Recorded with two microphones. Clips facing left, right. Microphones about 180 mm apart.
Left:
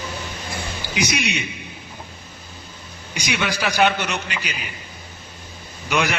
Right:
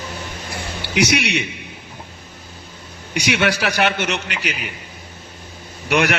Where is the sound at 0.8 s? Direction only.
70° right (ahead or behind).